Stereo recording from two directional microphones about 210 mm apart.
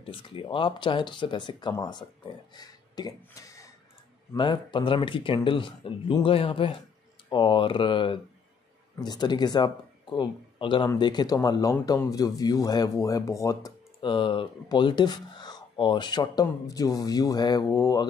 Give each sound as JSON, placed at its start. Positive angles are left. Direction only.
{"t": 0.0, "sound": "speech", "side_deg": 25}